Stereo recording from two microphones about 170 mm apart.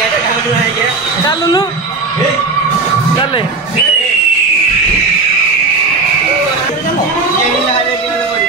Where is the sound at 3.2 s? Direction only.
30° left (ahead or behind).